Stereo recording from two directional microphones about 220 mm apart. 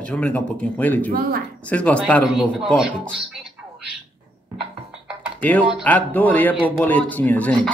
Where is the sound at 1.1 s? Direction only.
40° right (ahead or behind).